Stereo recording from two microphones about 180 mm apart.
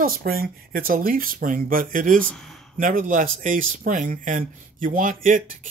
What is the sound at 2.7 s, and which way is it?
Speech, 50° right (ahead or behind).